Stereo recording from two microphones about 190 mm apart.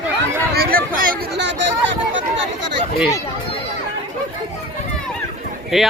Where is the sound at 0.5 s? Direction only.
50° right (ahead or behind); by 1.6 s 65° right (ahead or behind).